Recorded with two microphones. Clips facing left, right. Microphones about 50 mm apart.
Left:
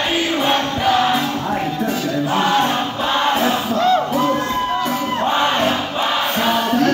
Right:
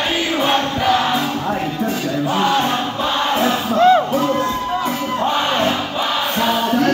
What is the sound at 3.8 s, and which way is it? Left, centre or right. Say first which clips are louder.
Crowd: right 5 dB; right.